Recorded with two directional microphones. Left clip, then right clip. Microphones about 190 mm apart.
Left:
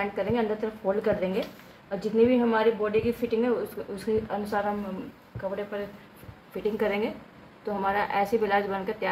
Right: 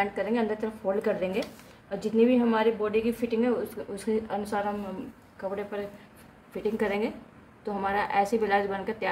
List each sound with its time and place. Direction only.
0.0 s a woman's voice: 15° right (ahead or behind)
6.5 s a woman's voice: 20° right (ahead or behind)